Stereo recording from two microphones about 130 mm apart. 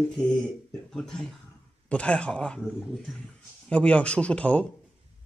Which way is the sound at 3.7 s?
10° left (ahead or behind).